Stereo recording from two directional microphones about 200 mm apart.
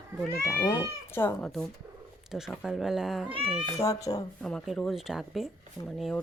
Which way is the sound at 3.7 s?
15° left (ahead or behind).